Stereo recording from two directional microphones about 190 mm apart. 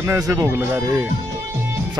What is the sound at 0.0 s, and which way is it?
Speech, 15° right (ahead or behind).